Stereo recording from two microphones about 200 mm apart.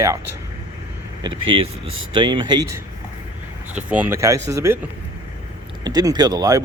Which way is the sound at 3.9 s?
10° right (ahead or behind).